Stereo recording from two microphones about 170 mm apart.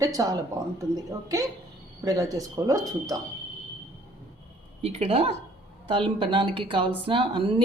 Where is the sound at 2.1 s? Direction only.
20° right (ahead or behind).